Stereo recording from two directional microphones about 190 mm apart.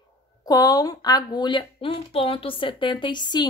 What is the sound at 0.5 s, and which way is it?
Speech, 20° left (ahead or behind).